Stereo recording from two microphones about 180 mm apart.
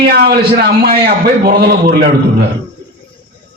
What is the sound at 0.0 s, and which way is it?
A man's voice, 60° right (ahead or behind).